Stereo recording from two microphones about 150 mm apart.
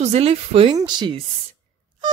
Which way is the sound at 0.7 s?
30° right (ahead or behind).